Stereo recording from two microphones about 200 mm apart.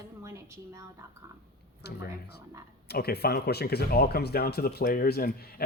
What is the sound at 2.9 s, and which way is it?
Speech, 55° left (ahead or behind).